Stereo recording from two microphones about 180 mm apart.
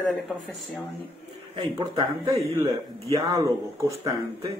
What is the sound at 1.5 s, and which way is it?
Speech, 30° right (ahead or behind).